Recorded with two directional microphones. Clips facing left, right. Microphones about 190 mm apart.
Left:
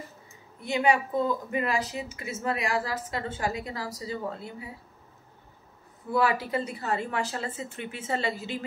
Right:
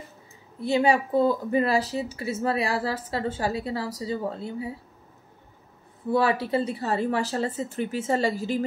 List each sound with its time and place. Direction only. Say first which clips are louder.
0.6 s speech: right 3 dB; 35° right (ahead or behind)
6.0 s speech: right 3 dB; 30° right (ahead or behind)